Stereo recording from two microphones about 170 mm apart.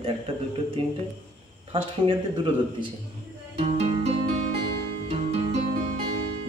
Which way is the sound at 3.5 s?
35° right (ahead or behind).